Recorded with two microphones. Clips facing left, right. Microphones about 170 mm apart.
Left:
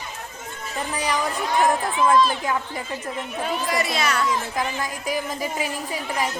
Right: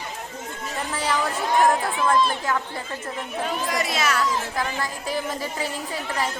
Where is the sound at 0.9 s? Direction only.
15° left (ahead or behind).